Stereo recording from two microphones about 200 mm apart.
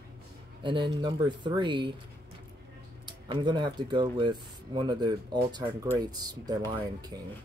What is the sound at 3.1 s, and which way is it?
Speech, 25° right (ahead or behind).